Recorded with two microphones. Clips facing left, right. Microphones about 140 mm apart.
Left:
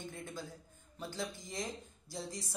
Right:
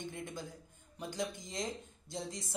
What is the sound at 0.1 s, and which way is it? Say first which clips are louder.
Speech: right 1 dB; 20° right (ahead or behind).